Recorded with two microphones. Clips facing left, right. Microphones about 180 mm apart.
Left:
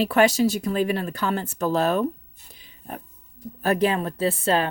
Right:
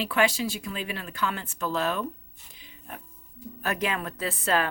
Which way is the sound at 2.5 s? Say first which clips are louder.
Left 6 dB; 40° left (ahead or behind).